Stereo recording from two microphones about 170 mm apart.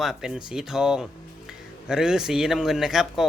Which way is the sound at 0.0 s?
Centre (ahead or behind).